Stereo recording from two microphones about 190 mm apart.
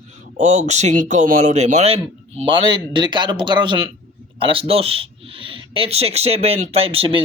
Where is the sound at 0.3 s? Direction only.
40° right (ahead or behind).